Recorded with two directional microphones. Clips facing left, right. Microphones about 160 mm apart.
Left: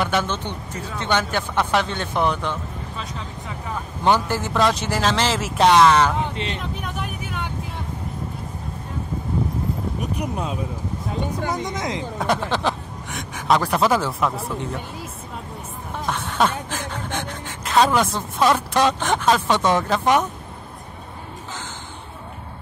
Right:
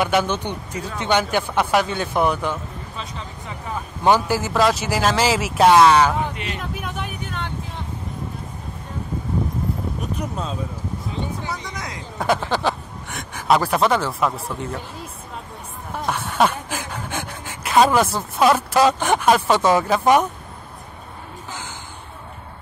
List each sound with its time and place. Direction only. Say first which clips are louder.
0.0 s speech: right 3 dB; 10° right (ahead or behind)
4.0 s speech: right 2 dB; 10° right (ahead or behind)
6.3 s speech: left 2 dB; 25° left (ahead or behind)
6.6 s speech: even; centre (ahead or behind)
10.1 s speech: left 1 dB; 15° left (ahead or behind)
11.4 s speech: left 5 dB; 45° left (ahead or behind)
11.7 s speech: left 6 dB; 20° left (ahead or behind)
12.2 s speech: right 3 dB; centre (ahead or behind)
16.1 s speech: right 2 dB; 10° right (ahead or behind)